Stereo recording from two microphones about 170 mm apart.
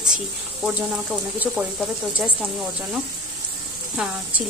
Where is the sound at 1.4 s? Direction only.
5° right (ahead or behind).